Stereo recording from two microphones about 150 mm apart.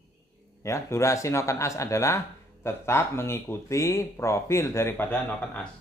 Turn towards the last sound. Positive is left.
turn(degrees=15)  # may be behind; listen again after turning